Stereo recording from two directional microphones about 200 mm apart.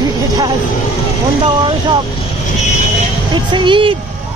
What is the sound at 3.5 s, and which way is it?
Speech, 25° right (ahead or behind).